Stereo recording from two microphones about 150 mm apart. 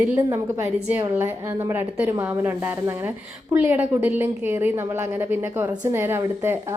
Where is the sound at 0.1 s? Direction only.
15° right (ahead or behind).